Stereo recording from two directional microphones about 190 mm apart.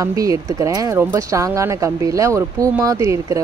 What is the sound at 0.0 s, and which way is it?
Speech, 15° right (ahead or behind).